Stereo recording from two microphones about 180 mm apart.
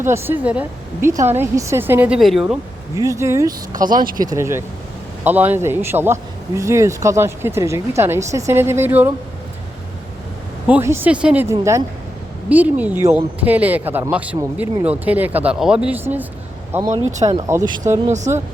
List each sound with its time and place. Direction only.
0.0 s a man's voice: 15° right (ahead or behind)
2.9 s speech: 20° right (ahead or behind)
3.8 s speech: 50° right (ahead or behind)
4.2 s a man's voice: 20° right (ahead or behind)
10.7 s a man's voice: 10° right (ahead or behind)